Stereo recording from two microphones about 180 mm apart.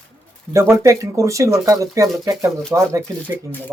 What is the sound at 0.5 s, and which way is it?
Speech, 10° right (ahead or behind).